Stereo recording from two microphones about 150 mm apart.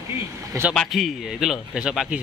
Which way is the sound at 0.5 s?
15° right (ahead or behind).